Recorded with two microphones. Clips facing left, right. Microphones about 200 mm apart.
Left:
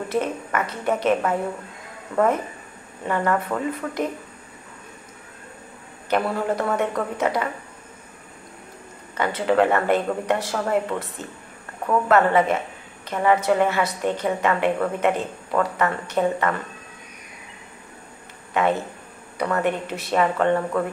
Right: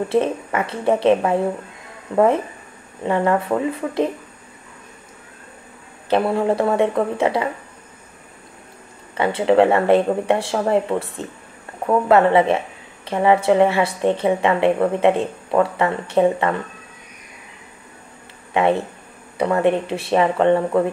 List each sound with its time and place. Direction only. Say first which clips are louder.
0.1 s speech: right 3 dB; 25° right (ahead or behind)
6.0 s speech: right 5 dB; 25° right (ahead or behind)
9.1 s speech: right 5 dB; 25° right (ahead or behind)
18.5 s speech: right 4 dB; 25° right (ahead or behind)